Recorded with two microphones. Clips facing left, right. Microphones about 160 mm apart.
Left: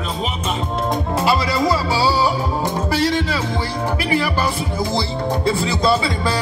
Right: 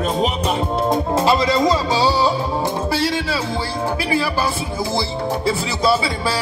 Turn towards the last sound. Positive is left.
turn(degrees=-10)  # may be behind; listen again after turning